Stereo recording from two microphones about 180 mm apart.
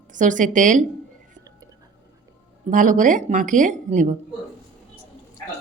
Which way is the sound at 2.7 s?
45° right (ahead or behind).